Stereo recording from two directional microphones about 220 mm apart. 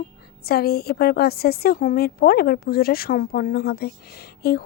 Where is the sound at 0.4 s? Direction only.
45° left (ahead or behind).